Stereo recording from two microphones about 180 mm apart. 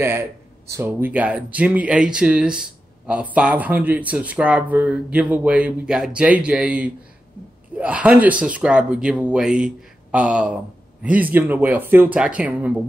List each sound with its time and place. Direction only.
0.0 s speech: 10° right (ahead or behind)